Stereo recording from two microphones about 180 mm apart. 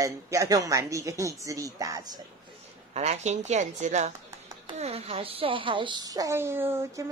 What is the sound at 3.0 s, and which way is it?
A woman's voice, 40° right (ahead or behind).